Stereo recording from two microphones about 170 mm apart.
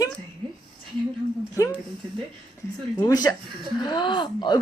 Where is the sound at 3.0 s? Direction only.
25° left (ahead or behind).